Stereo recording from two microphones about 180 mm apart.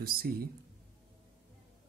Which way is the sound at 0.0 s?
55° right (ahead or behind).